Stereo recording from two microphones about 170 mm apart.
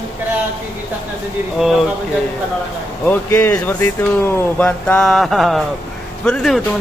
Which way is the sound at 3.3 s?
15° left (ahead or behind).